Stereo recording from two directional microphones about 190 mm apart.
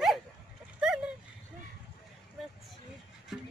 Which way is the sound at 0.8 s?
5° right (ahead or behind).